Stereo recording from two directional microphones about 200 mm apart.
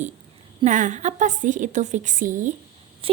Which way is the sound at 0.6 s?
40° right (ahead or behind).